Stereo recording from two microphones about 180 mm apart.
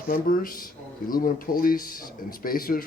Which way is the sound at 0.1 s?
50° left (ahead or behind).